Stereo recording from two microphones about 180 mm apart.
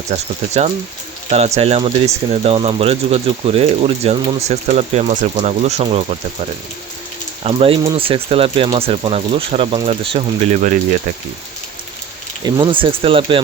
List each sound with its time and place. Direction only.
0.1 s speech: 40° right (ahead or behind)
7.4 s speech: 30° right (ahead or behind)
12.5 s speech: 25° right (ahead or behind)